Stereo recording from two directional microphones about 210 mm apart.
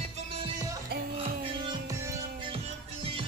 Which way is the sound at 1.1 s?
25° right (ahead or behind).